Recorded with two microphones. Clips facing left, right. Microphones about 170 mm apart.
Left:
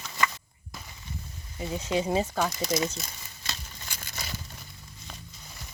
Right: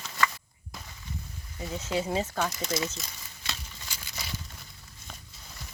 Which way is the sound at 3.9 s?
50° left (ahead or behind).